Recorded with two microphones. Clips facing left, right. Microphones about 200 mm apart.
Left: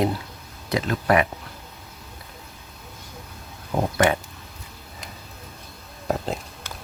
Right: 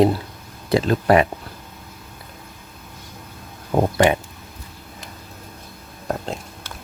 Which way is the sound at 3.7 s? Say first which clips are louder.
Right 5 dB; 50° right (ahead or behind).